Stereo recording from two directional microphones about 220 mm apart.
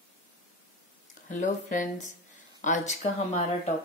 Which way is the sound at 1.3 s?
35° left (ahead or behind).